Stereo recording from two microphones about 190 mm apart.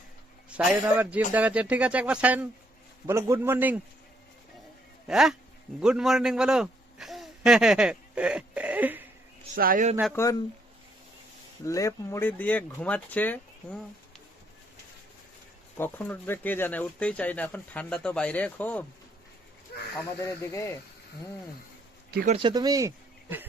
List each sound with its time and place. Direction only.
0.5 s speech: 5° right (ahead or behind)
5.0 s a man's voice: centre (ahead or behind)
9.6 s speech: 45° right (ahead or behind)
10.1 s speech: 15° left (ahead or behind)
11.6 s speech: 15° left (ahead or behind)
15.8 s speech: 10° left (ahead or behind)
20.2 s speech: 15° left (ahead or behind)
22.3 s speech: 25° right (ahead or behind)